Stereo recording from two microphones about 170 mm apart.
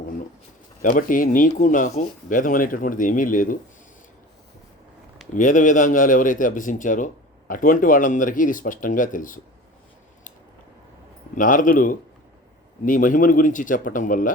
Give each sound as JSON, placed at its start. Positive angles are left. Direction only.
{"t": 0.8, "sound": "a man's voice", "side_deg": 55}
{"t": 5.4, "sound": "a man's voice", "side_deg": 50}
{"t": 11.3, "sound": "a man's voice", "side_deg": 50}